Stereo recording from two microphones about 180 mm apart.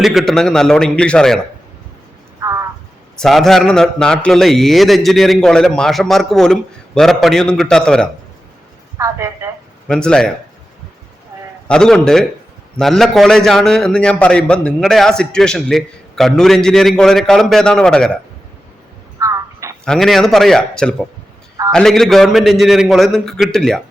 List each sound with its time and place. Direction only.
0.0 s a man's voice: centre (ahead or behind)
2.4 s frog: 15° right (ahead or behind)
3.2 s a man's voice: centre (ahead or behind)
9.0 s a sound: 15° right (ahead or behind)
9.8 s a man's voice: 5° left (ahead or behind)
11.7 s a man's voice: 5° left (ahead or behind)
19.2 s a sound: 15° right (ahead or behind)
19.8 s a man's voice: 5° left (ahead or behind)